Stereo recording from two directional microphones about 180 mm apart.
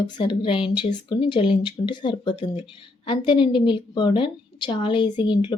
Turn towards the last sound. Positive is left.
turn(degrees=25)  # may be behind; listen again after turning